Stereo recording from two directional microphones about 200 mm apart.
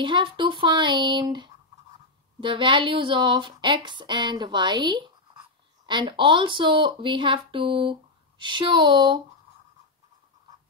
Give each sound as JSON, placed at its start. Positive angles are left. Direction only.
{"t": 0.0, "sound": "speech", "side_deg": -25}